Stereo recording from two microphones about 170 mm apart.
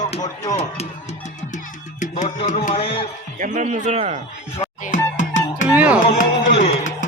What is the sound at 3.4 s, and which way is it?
Speech, 50° right (ahead or behind).